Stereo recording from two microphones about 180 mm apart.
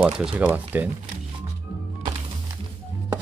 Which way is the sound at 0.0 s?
5° right (ahead or behind).